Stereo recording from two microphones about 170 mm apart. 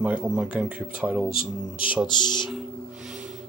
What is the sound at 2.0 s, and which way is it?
Speech, 25° left (ahead or behind).